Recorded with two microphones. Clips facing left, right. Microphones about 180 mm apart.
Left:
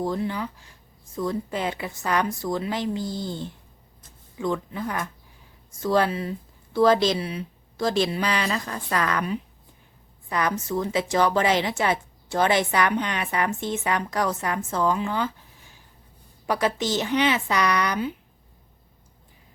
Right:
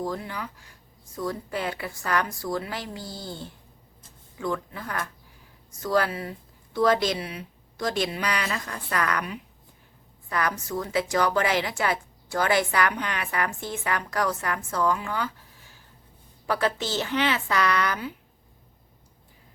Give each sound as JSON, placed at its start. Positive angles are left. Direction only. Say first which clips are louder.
{"t": 0.0, "sound": "a woman's voice", "louder": "left 5 dB", "side_deg": 25}
{"t": 16.5, "sound": "speech", "louder": "left 2 dB", "side_deg": 15}